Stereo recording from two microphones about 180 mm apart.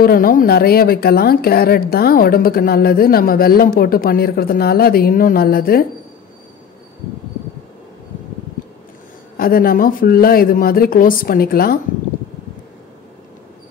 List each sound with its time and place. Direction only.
0.0 s a woman's voice: 55° left (ahead or behind)
9.4 s a woman's voice: 55° left (ahead or behind)